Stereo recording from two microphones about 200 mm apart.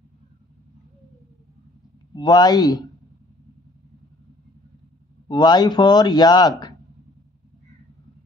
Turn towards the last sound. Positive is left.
turn(degrees=20)  # may be behind; listen again after turning